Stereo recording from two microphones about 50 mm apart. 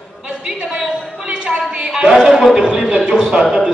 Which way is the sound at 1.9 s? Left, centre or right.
Centre.